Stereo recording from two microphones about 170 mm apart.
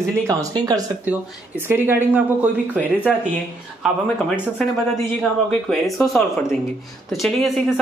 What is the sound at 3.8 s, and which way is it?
Speech, 5° right (ahead or behind).